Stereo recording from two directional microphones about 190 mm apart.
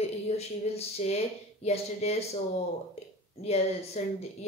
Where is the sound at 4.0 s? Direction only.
35° left (ahead or behind).